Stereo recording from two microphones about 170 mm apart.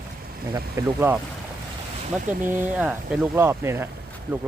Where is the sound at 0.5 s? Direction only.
15° right (ahead or behind).